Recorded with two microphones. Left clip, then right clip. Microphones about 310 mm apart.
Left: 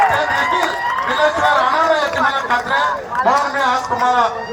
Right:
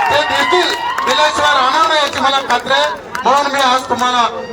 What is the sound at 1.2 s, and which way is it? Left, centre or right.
A man's voice, right.